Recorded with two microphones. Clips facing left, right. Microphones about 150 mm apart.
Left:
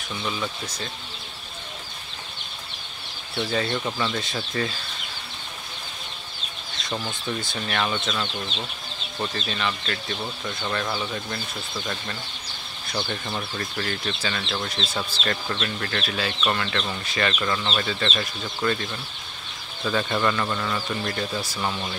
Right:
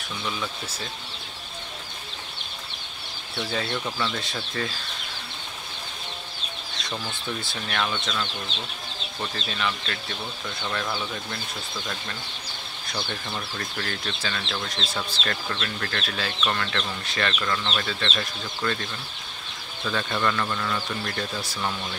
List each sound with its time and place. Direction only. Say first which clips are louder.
0.2 s speech: left 2 dB; 5° left (ahead or behind)
3.4 s speech: left 3 dB; centre (ahead or behind)
6.9 s speech: left 3 dB; 20° left (ahead or behind)
7.5 s speech: left 2 dB; 5° left (ahead or behind)
9.3 s speech: right 2 dB; centre (ahead or behind)